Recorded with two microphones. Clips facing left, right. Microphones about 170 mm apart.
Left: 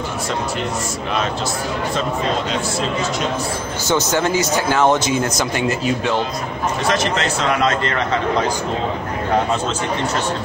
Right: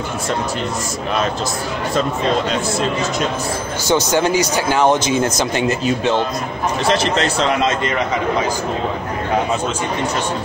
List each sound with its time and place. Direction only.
3.9 s a man's voice: 15° right (ahead or behind)
6.9 s a man's voice: 30° right (ahead or behind)
7.6 s a man's voice: 15° right (ahead or behind)